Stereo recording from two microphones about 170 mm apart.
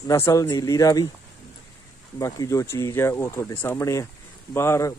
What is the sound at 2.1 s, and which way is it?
A man's voice, 20° left (ahead or behind).